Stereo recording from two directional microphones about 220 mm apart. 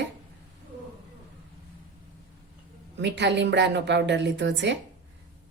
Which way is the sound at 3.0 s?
50° right (ahead or behind).